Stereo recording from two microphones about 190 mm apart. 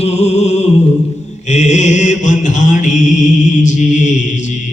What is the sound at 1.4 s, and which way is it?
Mantra, 40° left (ahead or behind).